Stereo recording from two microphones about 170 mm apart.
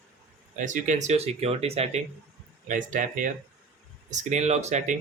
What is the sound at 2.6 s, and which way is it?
Speech, 50° right (ahead or behind).